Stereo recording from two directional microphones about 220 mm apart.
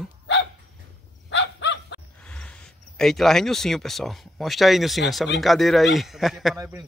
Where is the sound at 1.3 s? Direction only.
55° left (ahead or behind).